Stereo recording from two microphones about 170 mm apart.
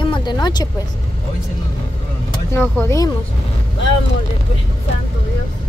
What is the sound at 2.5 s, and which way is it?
Speech, 15° left (ahead or behind).